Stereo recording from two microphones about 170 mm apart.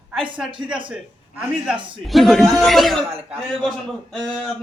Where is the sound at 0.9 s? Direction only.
5° right (ahead or behind).